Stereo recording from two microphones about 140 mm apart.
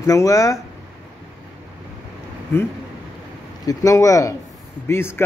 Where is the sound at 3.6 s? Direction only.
25° left (ahead or behind).